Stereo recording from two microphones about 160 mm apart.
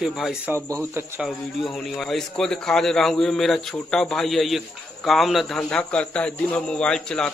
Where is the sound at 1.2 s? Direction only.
Centre (ahead or behind).